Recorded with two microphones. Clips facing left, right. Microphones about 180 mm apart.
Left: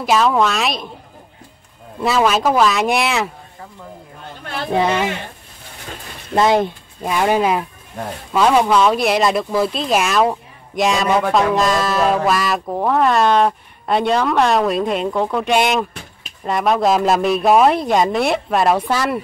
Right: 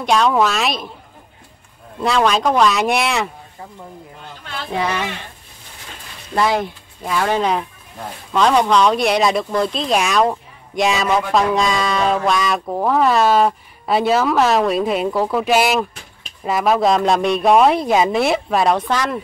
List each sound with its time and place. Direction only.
0.0 s speech: 5° left (ahead or behind)
2.0 s speech: 5° left (ahead or behind)
4.7 s speech: 25° left (ahead or behind)
6.3 s speech: 20° left (ahead or behind)